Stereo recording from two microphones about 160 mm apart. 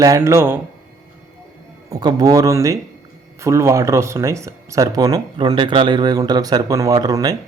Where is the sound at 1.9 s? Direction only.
25° right (ahead or behind).